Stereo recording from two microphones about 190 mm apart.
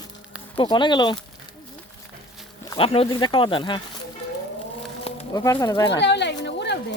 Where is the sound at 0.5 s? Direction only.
25° left (ahead or behind).